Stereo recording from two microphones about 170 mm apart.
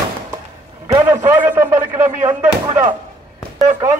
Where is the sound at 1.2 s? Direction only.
10° right (ahead or behind).